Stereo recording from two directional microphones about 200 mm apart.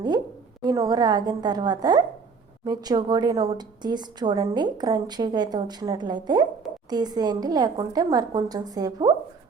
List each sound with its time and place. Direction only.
0.6 s a woman's voice: 20° right (ahead or behind)